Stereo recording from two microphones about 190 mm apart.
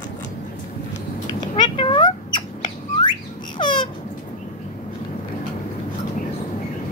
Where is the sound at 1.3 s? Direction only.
25° left (ahead or behind).